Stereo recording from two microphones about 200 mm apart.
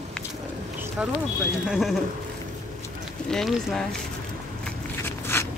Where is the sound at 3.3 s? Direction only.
Centre (ahead or behind).